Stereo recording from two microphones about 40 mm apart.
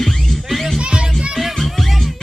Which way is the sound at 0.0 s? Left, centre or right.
Centre.